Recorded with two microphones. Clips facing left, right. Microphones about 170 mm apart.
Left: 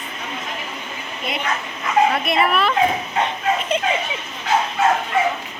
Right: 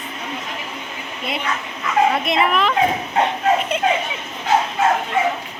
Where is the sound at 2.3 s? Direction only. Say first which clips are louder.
Even; 20° right (ahead or behind).